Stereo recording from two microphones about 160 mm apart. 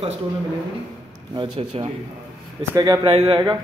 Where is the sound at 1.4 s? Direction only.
30° right (ahead or behind).